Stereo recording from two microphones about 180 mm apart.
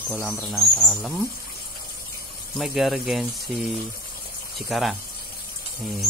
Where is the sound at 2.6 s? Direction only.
Centre (ahead or behind).